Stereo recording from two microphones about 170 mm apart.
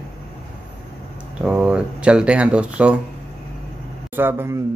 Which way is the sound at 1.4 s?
5° right (ahead or behind).